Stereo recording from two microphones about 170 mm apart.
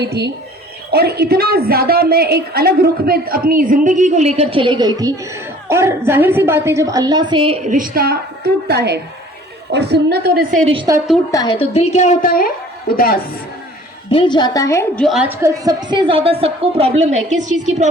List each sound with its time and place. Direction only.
0.0 s a woman's voice: 75° right (ahead or behind); by 7.7 s 35° right (ahead or behind)
7.7 s a woman's voice: 55° right (ahead or behind)
10.6 s a woman's voice: 35° right (ahead or behind)
11.3 s a woman's voice: 20° left (ahead or behind)
11.5 s speech: 35° left (ahead or behind)
12.3 s speech: 60° left (ahead or behind)
14.1 s a woman's voice: 30° left (ahead or behind)
14.9 s a woman's voice: centre (ahead or behind); by 17.8 s 45° right (ahead or behind)